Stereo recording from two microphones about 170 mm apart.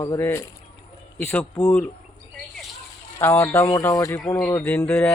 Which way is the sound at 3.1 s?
15° left (ahead or behind).